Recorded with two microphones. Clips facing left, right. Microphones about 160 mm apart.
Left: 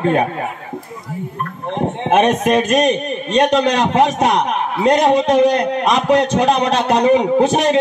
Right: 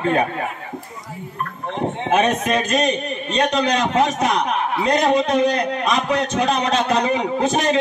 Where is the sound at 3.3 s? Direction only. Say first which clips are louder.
Left 5 dB; 75° left (ahead or behind).